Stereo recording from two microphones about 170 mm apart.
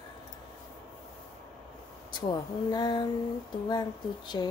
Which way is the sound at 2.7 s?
25° left (ahead or behind).